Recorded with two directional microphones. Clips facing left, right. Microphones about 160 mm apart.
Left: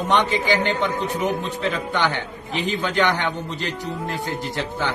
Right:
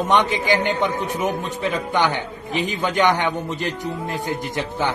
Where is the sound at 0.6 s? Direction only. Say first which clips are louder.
Right 1 dB; 15° right (ahead or behind).